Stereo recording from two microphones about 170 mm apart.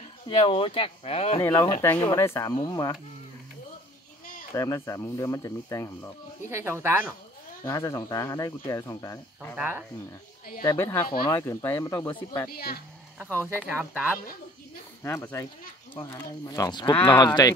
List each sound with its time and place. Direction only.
0.3 s speech: 30° left (ahead or behind)
1.4 s speech: 20° left (ahead or behind)
4.3 s a sound: 55° left (ahead or behind)
4.6 s speech: 20° left (ahead or behind)
6.5 s speech: 15° right (ahead or behind)
7.6 s speech: 20° left (ahead or behind)
9.6 s speech: 10° right (ahead or behind)
10.6 s speech: 20° left (ahead or behind)
12.4 s speech: 65° left (ahead or behind)
13.2 s speech: 15° right (ahead or behind)
15.0 s speech: 15° left (ahead or behind)
16.9 s speech: 10° left (ahead or behind)
17.2 s speech: 25° left (ahead or behind)